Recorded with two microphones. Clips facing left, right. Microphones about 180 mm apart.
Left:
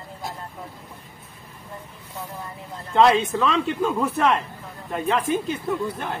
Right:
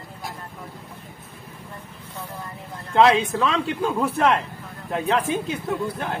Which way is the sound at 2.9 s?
Centre (ahead or behind).